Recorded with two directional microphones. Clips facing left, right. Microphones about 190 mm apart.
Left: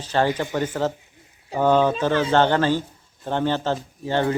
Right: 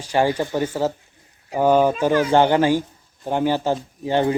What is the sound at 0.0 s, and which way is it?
Speech, 10° right (ahead or behind).